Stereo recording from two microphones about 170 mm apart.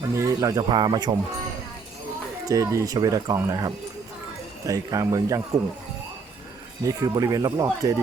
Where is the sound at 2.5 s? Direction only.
20° right (ahead or behind).